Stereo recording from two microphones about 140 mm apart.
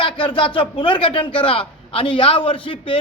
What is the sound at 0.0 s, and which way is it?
Speech, 35° left (ahead or behind).